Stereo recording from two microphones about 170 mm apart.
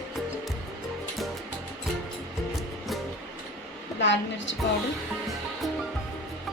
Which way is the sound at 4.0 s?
90° left.